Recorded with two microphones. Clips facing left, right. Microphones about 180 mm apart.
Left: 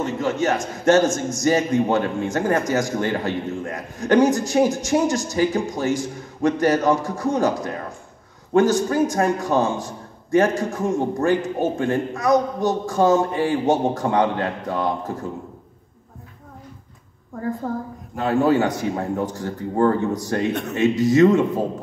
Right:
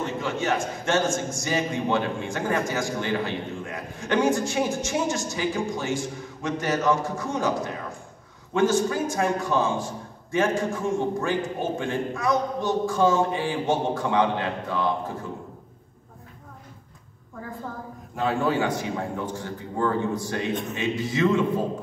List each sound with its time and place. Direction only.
0.2 s a man's voice: 40° left (ahead or behind)
17.6 s a man's voice: 40° left (ahead or behind)